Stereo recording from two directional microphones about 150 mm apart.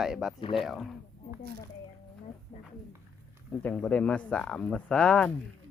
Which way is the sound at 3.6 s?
10° left (ahead or behind).